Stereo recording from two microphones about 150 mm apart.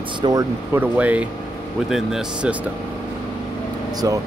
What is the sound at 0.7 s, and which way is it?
A man's voice, 10° right (ahead or behind).